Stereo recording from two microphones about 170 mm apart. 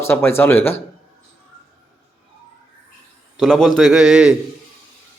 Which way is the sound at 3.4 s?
5° left (ahead or behind).